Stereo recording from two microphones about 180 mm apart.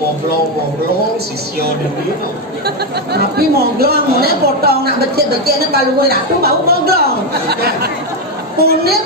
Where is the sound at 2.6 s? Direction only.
65° right (ahead or behind).